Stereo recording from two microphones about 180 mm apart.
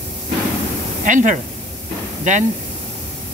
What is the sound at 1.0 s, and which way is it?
Speech, 45° right (ahead or behind).